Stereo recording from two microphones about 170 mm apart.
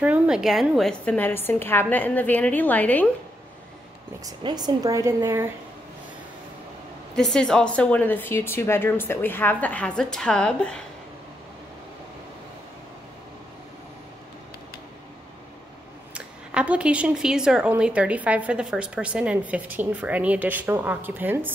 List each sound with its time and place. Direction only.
0.0 s a woman's voice: 5° right (ahead or behind); by 3.1 s 10° left (ahead or behind)
4.2 s speech: 25° right (ahead or behind)
7.2 s a woman's voice: centre (ahead or behind)
16.1 s a woman's voice: 5° right (ahead or behind)